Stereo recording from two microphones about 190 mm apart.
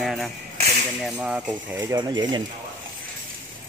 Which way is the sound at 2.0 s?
25° right (ahead or behind).